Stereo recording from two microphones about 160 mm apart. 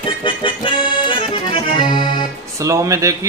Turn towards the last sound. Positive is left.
turn(degrees=-20)  # may be behind; listen again after turning